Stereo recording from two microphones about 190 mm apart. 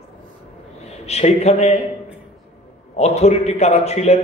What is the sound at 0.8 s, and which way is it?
A man's voice, 35° left (ahead or behind).